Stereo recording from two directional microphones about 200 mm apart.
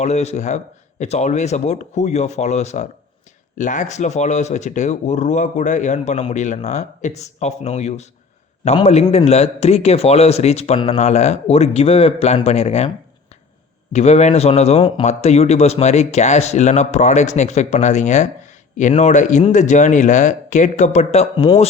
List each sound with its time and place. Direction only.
0.0 s speech: 35° left (ahead or behind)
13.9 s speech: 35° left (ahead or behind)